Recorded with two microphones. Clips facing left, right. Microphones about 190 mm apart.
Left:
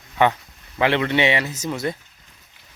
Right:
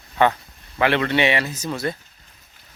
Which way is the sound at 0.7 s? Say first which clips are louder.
Even; 20° left (ahead or behind).